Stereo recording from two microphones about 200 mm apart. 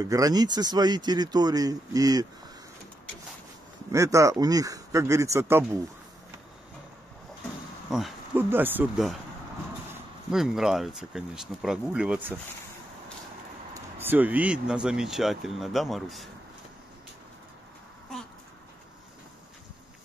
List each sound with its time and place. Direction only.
0.0 s speech: 20° right (ahead or behind)
3.9 s speech: 15° right (ahead or behind)
7.9 s speech: 5° right (ahead or behind)
10.3 s speech: centre (ahead or behind)
13.7 s speech: 10° right (ahead or behind)